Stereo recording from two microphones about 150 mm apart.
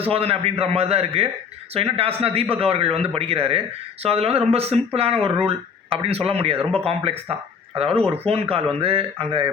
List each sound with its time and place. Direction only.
0.0 s speech: 40° right (ahead or behind)